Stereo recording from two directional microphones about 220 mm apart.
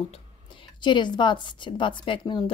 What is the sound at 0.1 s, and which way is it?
A woman's voice, 20° left (ahead or behind).